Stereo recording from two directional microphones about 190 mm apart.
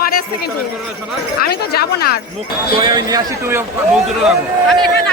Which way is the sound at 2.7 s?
25° right (ahead or behind).